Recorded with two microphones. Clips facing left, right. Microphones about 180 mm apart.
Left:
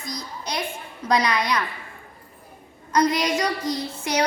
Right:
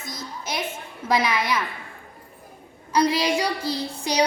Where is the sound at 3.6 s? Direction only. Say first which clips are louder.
Even; 30° right (ahead or behind).